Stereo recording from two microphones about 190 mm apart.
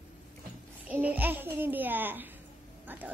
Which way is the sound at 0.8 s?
10° right (ahead or behind).